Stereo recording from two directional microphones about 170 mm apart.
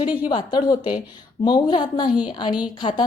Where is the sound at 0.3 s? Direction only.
25° left (ahead or behind).